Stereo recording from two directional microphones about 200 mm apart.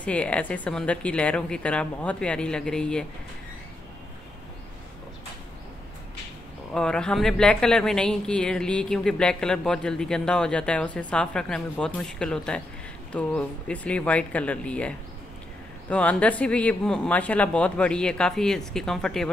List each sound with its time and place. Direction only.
0.0 s a woman's voice: 5° left (ahead or behind)
6.7 s a woman's voice: 5° left (ahead or behind)